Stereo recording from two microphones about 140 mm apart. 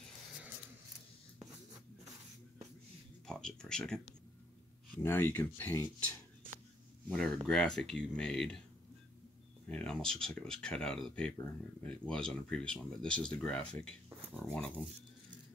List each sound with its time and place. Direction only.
1.4 s a sound: 25° right (ahead or behind)
3.3 s speech: 5° left (ahead or behind)
4.9 s speech: 15° left (ahead or behind)
7.1 s speech: 5° left (ahead or behind)
9.7 s speech: 5° left (ahead or behind)
14.0 s a sound: 20° right (ahead or behind)
14.3 s speech: 5° left (ahead or behind)